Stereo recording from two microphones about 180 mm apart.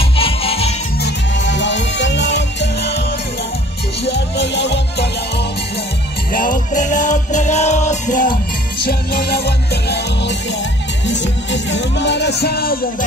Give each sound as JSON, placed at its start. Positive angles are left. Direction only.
{"t": 0.2, "sound": "music", "side_deg": 30}
{"t": 1.0, "sound": "music", "side_deg": 85}
{"t": 4.0, "sound": "music", "side_deg": 70}
{"t": 6.3, "sound": "music", "side_deg": 45}
{"t": 8.8, "sound": "music", "side_deg": 55}
{"t": 11.1, "sound": "music", "side_deg": 80}